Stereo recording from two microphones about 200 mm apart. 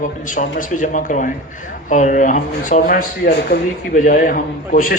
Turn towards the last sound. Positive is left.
turn(degrees=40)  # may be behind; listen again after turning